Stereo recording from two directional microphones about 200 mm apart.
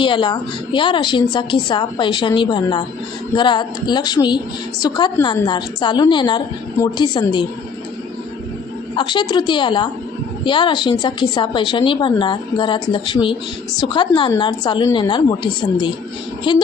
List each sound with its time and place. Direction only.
0.0 s a woman's voice: 25° left (ahead or behind)
9.0 s a woman's voice: 20° left (ahead or behind)